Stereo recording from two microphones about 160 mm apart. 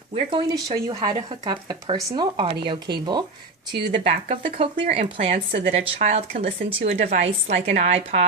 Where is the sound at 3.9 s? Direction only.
35° right (ahead or behind).